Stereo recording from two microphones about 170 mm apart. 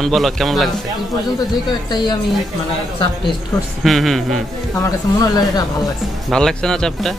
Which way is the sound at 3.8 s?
Centre (ahead or behind).